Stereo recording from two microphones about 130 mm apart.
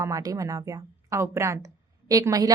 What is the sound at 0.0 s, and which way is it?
Speech, 30° right (ahead or behind).